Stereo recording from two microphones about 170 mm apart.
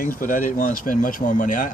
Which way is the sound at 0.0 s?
55° left (ahead or behind).